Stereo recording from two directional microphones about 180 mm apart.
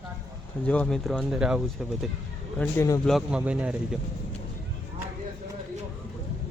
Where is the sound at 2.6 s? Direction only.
15° left (ahead or behind).